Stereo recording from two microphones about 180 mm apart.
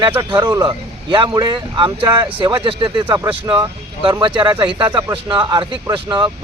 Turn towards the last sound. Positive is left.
turn(degrees=-25)  # may be behind; listen again after turning